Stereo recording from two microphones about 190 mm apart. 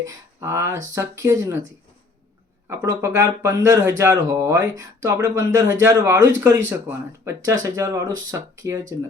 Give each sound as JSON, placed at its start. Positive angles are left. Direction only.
{"t": 0.0, "sound": "speech", "side_deg": -15}
{"t": 2.6, "sound": "speech", "side_deg": -15}